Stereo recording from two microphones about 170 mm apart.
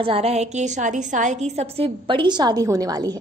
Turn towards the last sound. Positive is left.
turn(degrees=-20)  # may be behind; listen again after turning